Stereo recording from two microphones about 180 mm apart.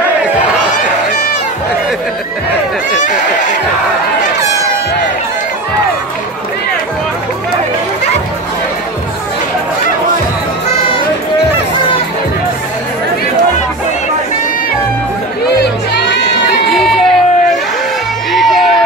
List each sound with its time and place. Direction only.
3.0 s a sound: 45° left (ahead or behind)
15.4 s crowd: 65° left (ahead or behind)
16.6 s crowd: centre (ahead or behind)
18.3 s crowd: centre (ahead or behind)